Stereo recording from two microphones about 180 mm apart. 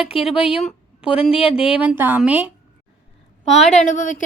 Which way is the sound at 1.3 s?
30° left (ahead or behind).